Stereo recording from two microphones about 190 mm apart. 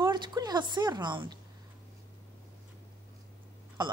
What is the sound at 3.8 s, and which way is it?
Speech, 25° right (ahead or behind).